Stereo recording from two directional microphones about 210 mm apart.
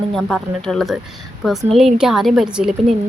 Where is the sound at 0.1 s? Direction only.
Centre (ahead or behind).